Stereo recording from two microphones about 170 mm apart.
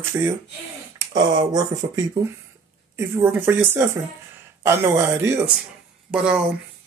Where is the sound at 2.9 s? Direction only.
10° right (ahead or behind).